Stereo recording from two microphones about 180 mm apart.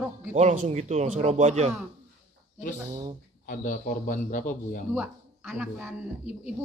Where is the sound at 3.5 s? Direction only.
45° left (ahead or behind).